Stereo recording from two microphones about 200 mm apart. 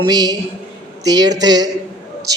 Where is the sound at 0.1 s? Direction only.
20° right (ahead or behind).